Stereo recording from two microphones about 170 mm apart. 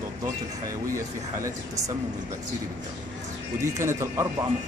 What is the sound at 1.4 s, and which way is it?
Speech, 20° right (ahead or behind).